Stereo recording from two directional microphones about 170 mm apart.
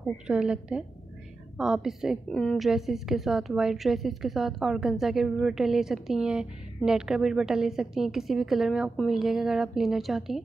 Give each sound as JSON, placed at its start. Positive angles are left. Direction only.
{"t": 0.3, "sound": "a woman's voice", "side_deg": -5}